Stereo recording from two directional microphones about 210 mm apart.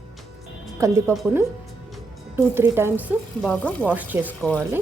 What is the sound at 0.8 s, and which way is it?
Speech, 15° right (ahead or behind).